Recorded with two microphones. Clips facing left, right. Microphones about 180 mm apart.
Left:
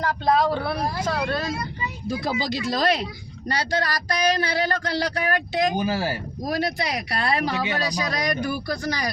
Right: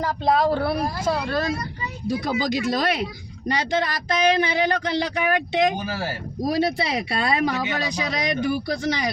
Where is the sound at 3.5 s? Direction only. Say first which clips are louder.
Right 2 dB; 20° right (ahead or behind).